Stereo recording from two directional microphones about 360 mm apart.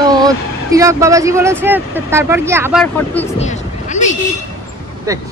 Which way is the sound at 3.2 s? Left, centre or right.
Centre.